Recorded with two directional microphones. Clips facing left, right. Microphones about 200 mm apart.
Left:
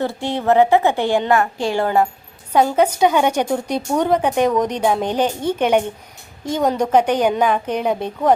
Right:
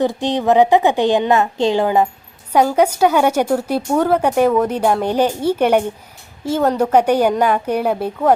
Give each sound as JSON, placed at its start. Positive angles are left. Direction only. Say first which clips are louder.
{"t": 0.0, "sound": "a woman's voice", "louder": "right 4 dB", "side_deg": -15}